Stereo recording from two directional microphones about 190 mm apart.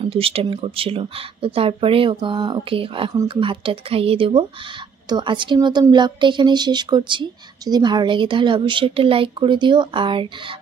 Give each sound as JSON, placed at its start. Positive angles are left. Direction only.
{"t": 0.0, "sound": "speech", "side_deg": -30}